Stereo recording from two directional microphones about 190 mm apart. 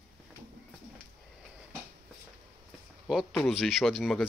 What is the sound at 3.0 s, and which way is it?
Speech, centre (ahead or behind).